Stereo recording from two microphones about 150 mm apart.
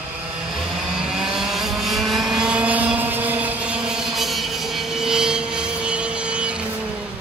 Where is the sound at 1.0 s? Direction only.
5° right (ahead or behind).